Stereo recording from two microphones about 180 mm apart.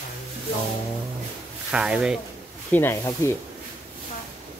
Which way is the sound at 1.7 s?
5° right (ahead or behind).